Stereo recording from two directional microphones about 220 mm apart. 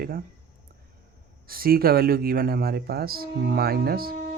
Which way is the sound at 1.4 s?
40° right (ahead or behind).